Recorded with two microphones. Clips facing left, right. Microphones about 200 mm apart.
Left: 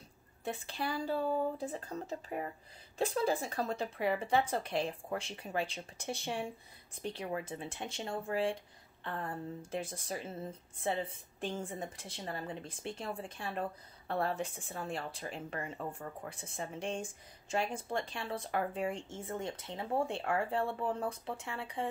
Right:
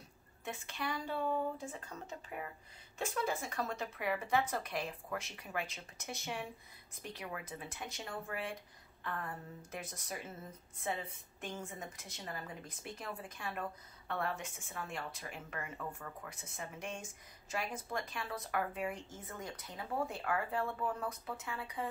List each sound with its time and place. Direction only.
0.5 s a woman's voice: 35° left (ahead or behind)